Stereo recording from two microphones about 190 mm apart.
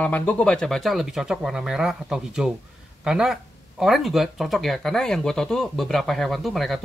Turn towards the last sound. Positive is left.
turn(degrees=0)  # may be behind; listen again after turning